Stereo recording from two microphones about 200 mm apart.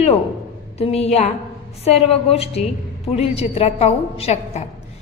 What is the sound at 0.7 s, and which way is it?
A woman's voice, 30° left (ahead or behind).